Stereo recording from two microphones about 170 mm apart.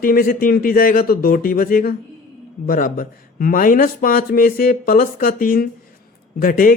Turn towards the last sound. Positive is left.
turn(degrees=55)  # may be behind; listen again after turning